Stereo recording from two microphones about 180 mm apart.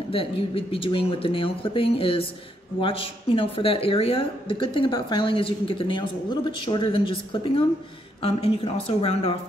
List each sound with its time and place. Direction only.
0.1 s a woman's voice: 30° left (ahead or behind)